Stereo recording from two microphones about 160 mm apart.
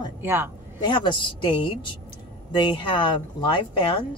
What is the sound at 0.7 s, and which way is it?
Speech, 30° left (ahead or behind).